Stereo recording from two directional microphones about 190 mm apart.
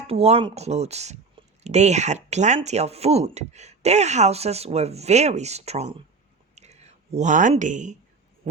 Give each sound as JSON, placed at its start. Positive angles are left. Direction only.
{"t": 0.1, "sound": "speech", "side_deg": -30}